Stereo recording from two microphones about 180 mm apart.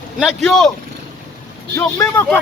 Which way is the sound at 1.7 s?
15° left (ahead or behind).